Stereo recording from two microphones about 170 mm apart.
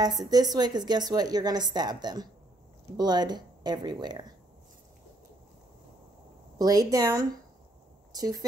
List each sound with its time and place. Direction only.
0.2 s a woman's voice: 25° right (ahead or behind)
6.6 s a woman's voice: 20° right (ahead or behind)